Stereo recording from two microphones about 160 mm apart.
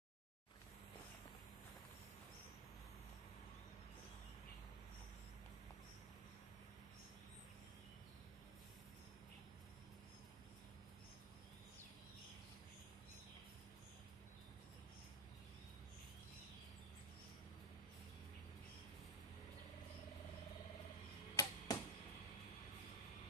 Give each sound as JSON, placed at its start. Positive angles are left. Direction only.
{"t": 21.4, "sound": "music", "side_deg": 20}